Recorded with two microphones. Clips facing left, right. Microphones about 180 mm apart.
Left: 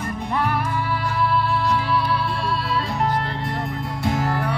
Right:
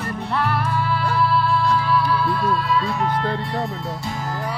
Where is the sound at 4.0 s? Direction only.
60° left (ahead or behind).